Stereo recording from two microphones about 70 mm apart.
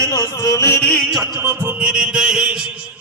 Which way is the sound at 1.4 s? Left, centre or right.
Right.